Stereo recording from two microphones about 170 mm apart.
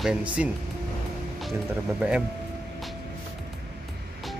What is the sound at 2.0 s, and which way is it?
Speech, 5° right (ahead or behind).